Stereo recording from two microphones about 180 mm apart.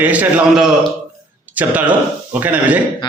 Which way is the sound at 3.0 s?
25° left (ahead or behind).